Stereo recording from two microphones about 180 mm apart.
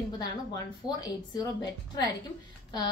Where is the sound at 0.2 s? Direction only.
25° left (ahead or behind).